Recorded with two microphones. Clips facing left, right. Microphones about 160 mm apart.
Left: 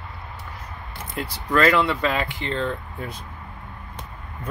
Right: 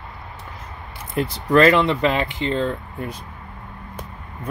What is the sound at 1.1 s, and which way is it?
Speech, 20° right (ahead or behind).